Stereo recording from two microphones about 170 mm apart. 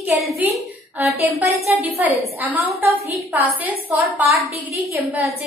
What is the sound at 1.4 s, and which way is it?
A woman's voice, centre (ahead or behind).